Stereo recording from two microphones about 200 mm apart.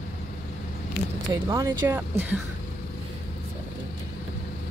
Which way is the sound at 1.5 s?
20° right (ahead or behind).